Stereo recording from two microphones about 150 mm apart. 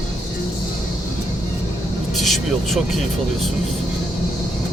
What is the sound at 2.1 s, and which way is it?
Vehicle, centre (ahead or behind).